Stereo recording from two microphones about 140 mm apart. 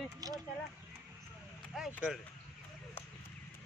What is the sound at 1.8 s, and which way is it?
Speech, 5° right (ahead or behind).